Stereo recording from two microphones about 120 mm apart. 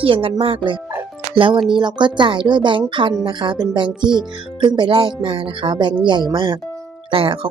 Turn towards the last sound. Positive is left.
turn(degrees=-45)  # may be behind; listen again after turning